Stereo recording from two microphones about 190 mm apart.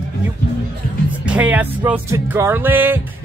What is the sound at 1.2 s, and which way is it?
Speech, 5° right (ahead or behind).